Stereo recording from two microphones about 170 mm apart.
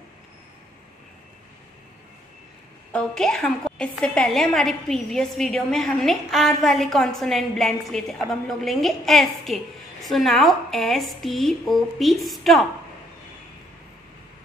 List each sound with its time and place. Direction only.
2.9 s a woman's voice: 5° left (ahead or behind)